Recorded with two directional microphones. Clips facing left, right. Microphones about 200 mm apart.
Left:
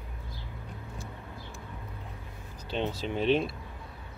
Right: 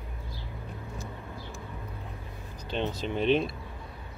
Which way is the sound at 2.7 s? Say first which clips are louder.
Right 1 dB; 5° left (ahead or behind).